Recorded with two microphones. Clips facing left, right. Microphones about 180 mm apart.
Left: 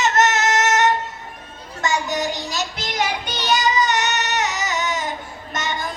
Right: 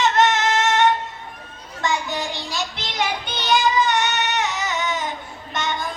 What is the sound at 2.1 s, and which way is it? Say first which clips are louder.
Child singing: left 3 dB; 45° left (ahead or behind).